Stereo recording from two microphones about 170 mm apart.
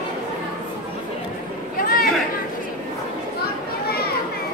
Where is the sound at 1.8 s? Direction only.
60° left (ahead or behind).